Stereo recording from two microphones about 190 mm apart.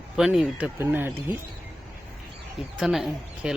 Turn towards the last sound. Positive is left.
turn(degrees=0)  # may be behind; listen again after turning